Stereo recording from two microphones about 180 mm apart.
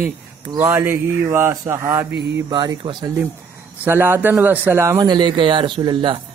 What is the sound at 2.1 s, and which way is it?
Mantra, 70° right (ahead or behind).